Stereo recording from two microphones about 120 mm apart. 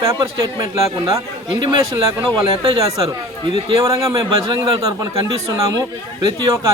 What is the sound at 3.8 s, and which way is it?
A man's voice, 25° right (ahead or behind).